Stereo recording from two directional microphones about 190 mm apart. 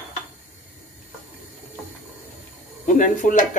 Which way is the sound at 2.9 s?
45° left (ahead or behind).